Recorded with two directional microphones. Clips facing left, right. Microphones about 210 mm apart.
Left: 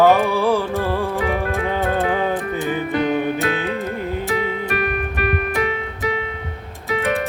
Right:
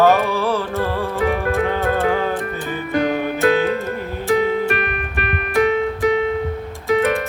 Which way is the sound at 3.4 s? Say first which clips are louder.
Right 6 dB; 45° right (ahead or behind).